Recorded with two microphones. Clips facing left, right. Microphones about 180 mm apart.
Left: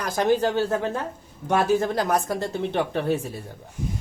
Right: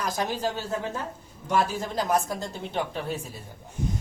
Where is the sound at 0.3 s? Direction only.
65° left (ahead or behind).